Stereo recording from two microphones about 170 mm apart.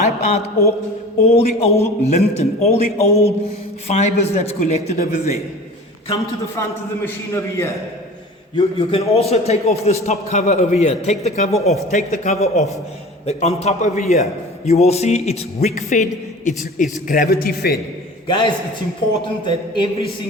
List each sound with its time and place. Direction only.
0.0 s a man's voice: 40° left (ahead or behind)
6.6 s a man's voice: 15° left (ahead or behind)
8.5 s a man's voice: 35° left (ahead or behind); by 17.7 s 65° left (ahead or behind)
18.3 s a man's voice: 30° left (ahead or behind)